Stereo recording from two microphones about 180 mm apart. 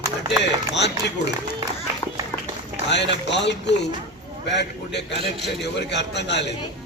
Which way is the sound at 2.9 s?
75° left (ahead or behind).